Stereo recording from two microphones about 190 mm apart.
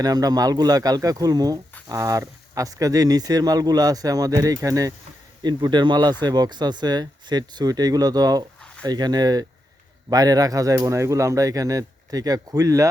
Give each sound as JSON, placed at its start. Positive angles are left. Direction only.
{"t": 0.0, "sound": "speech", "side_deg": -20}